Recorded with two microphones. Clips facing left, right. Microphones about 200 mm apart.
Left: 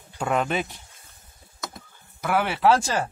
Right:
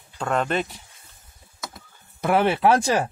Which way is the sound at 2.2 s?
20° right (ahead or behind).